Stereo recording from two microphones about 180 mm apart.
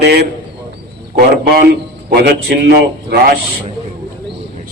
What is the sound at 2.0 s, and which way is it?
A man's voice, 60° right (ahead or behind).